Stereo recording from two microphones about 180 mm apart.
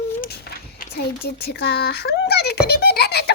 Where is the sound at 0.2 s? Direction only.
55° left (ahead or behind).